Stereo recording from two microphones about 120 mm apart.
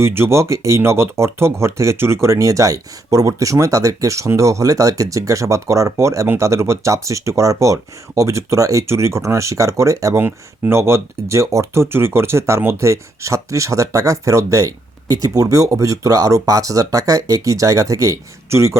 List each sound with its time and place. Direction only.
0.0 s speech: 20° right (ahead or behind)